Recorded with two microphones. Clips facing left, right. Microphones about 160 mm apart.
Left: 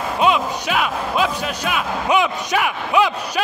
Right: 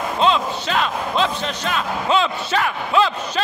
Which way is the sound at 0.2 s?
10° left (ahead or behind).